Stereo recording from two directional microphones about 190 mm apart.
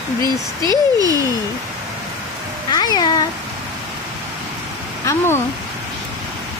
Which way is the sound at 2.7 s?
20° left (ahead or behind).